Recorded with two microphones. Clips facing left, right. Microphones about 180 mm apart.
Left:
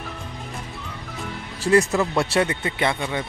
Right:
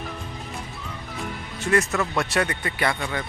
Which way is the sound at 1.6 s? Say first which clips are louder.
Left 4 dB; 30° left (ahead or behind).